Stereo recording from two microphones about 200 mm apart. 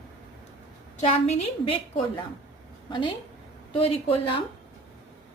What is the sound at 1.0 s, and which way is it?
A woman's voice, 30° left (ahead or behind).